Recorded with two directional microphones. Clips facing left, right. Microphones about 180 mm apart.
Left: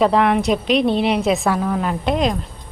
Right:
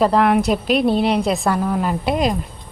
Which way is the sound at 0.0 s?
Centre (ahead or behind).